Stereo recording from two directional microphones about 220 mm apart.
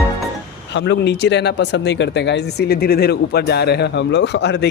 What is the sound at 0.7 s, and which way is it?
Speech, 55° left (ahead or behind).